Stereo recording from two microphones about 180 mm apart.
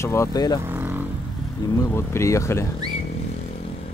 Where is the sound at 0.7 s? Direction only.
10° right (ahead or behind).